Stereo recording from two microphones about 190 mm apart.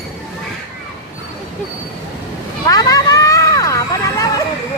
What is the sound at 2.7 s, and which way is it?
Vehicle, 20° left (ahead or behind).